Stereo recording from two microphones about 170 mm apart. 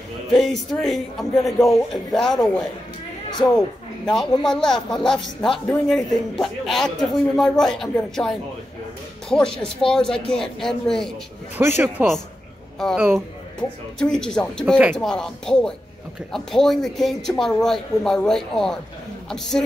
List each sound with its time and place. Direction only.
0.3 s speech: centre (ahead or behind)
3.3 s a sound: 25° left (ahead or behind)
4.1 s speech: centre (ahead or behind)
11.5 s speech: 15° right (ahead or behind)
12.7 s speech: centre (ahead or behind)
14.1 s a man's voice: 5° left (ahead or behind)